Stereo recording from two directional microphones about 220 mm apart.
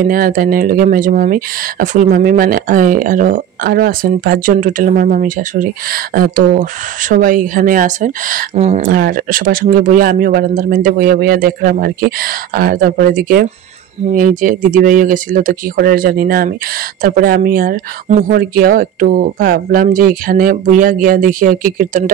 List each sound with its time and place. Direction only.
0.0 s speech: 40° right (ahead or behind)